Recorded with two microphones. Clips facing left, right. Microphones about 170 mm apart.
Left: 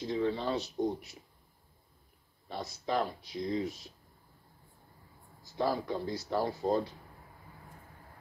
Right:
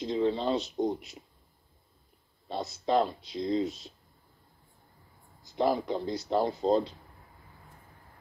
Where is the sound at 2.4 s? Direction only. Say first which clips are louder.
Right 5 dB; 25° right (ahead or behind).